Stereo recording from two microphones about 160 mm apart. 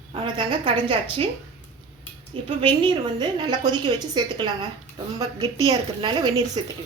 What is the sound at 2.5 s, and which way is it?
A woman's voice, 30° right (ahead or behind).